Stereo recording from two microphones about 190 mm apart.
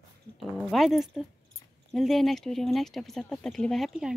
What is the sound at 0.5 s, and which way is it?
Speech, centre (ahead or behind).